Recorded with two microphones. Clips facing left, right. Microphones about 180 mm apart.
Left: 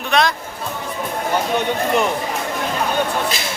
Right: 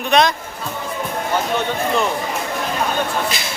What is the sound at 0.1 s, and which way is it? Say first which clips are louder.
Speech: right 2 dB; 20° right (ahead or behind).